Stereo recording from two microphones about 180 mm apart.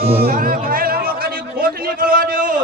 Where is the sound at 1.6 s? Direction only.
50° right (ahead or behind).